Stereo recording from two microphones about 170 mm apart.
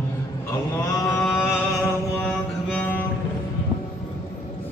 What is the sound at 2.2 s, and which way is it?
Mantra, 5° left (ahead or behind).